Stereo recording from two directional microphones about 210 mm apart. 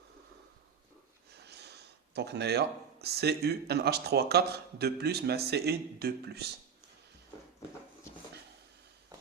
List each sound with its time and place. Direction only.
2.1 s speech: 50° right (ahead or behind)